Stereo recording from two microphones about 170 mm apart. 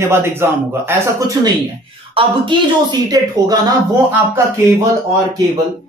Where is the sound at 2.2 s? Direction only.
30° right (ahead or behind).